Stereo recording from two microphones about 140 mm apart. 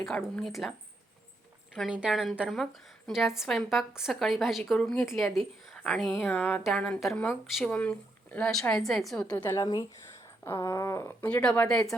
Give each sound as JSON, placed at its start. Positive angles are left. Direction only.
{"t": 0.0, "sound": "a woman's voice", "side_deg": 5}
{"t": 1.7, "sound": "a woman's voice", "side_deg": -5}
{"t": 9.5, "sound": "speech", "side_deg": 25}
{"t": 11.3, "sound": "speech", "side_deg": 10}